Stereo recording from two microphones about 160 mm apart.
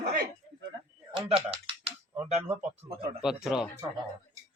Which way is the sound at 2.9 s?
35° right (ahead or behind).